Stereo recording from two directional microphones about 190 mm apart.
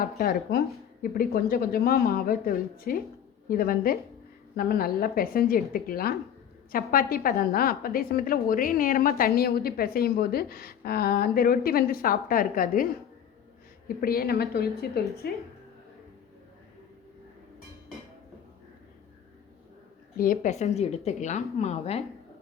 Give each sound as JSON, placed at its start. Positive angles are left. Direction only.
{"t": 0.0, "sound": "a woman's voice", "side_deg": 50}
{"t": 20.1, "sound": "a woman's voice", "side_deg": 45}